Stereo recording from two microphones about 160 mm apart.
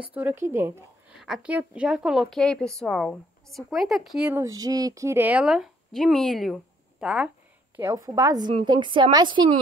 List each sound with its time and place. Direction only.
0.1 s speech: 10° right (ahead or behind)
1.2 s a woman's voice: 5° right (ahead or behind)
4.5 s a woman's voice: 25° right (ahead or behind); by 7.2 s 5° right (ahead or behind)
7.7 s a woman's voice: 15° right (ahead or behind)